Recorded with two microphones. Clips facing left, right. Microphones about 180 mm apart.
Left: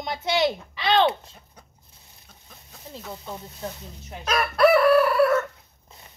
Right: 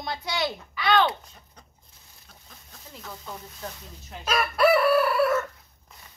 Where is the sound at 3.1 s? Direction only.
25° left (ahead or behind).